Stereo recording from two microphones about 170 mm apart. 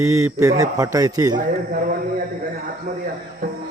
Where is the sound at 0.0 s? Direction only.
20° right (ahead or behind).